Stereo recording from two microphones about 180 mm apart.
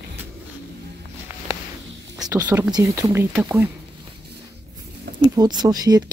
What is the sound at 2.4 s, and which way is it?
Speech, 10° right (ahead or behind).